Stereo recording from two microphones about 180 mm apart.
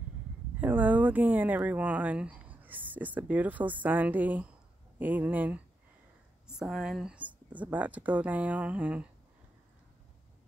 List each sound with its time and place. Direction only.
0.6 s speech: 10° right (ahead or behind)